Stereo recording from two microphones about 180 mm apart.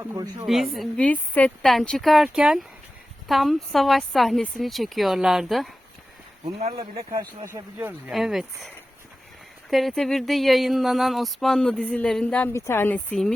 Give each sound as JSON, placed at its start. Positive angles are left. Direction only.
{"t": 0.0, "sound": "speech", "side_deg": -20}
{"t": 0.4, "sound": "a sound", "side_deg": 0}
{"t": 6.4, "sound": "speech", "side_deg": -35}
{"t": 7.5, "sound": "speech", "side_deg": -10}
{"t": 8.1, "sound": "a sound", "side_deg": 0}
{"t": 12.5, "sound": "a woman's voice", "side_deg": 15}